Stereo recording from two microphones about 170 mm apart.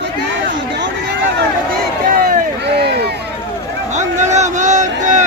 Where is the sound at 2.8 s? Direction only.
75° right (ahead or behind).